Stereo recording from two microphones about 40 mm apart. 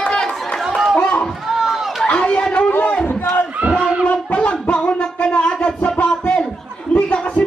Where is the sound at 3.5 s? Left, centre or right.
Right.